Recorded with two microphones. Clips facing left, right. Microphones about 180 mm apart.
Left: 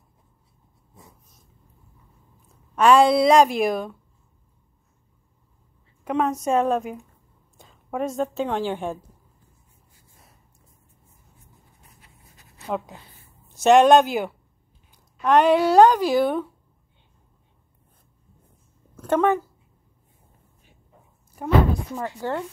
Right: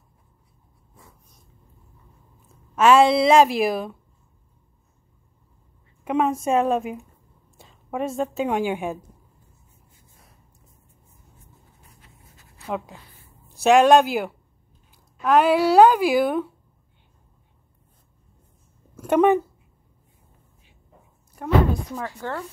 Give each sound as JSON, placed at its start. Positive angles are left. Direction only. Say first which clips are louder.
{"t": 2.7, "sound": "a woman's voice", "louder": "even", "side_deg": -5}
{"t": 6.0, "sound": "a woman's voice", "louder": "right 1 dB", "side_deg": -5}
{"t": 12.6, "sound": "a woman's voice", "louder": "left 1 dB", "side_deg": 0}
{"t": 18.9, "sound": "speech", "louder": "right 3 dB", "side_deg": -15}
{"t": 22.0, "sound": "speech", "louder": "left 3 dB", "side_deg": 20}